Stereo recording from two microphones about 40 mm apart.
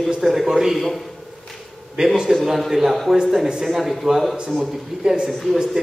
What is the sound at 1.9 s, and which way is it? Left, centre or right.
A man's voice, centre.